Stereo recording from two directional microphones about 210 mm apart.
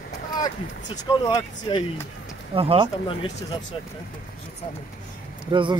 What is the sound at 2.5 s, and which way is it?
Speech, 25° right (ahead or behind).